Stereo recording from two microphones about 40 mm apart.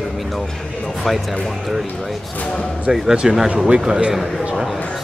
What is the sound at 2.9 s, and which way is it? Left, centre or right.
A man's voice, centre.